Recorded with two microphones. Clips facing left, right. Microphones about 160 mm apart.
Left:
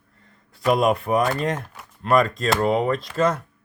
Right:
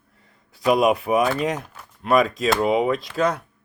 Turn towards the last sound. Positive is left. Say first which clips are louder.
# left 1 dB
turn(degrees=0)  # may be behind; listen again after turning